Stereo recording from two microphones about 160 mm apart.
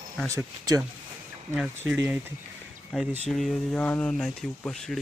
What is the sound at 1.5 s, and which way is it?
Speech, 5° right (ahead or behind).